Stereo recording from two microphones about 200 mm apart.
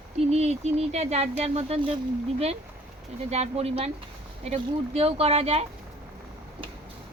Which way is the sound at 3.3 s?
30° right (ahead or behind).